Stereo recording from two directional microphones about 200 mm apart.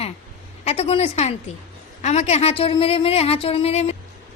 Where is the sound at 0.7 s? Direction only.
30° left (ahead or behind).